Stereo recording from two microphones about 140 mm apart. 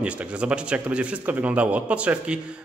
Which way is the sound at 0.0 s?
10° right (ahead or behind).